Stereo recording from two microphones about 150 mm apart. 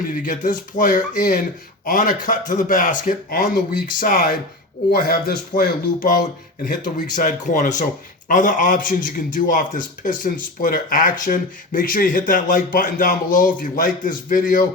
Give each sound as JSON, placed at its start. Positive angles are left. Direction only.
{"t": 0.2, "sound": "a man's voice", "side_deg": 60}
{"t": 4.9, "sound": "a man's voice", "side_deg": 80}